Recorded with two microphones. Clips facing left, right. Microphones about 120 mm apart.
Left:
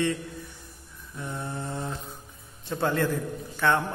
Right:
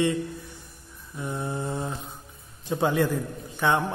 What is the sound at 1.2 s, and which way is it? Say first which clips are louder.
Mantra: right 4 dB; 15° right (ahead or behind).